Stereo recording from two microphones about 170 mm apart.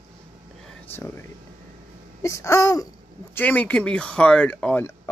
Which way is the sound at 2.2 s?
15° left (ahead or behind).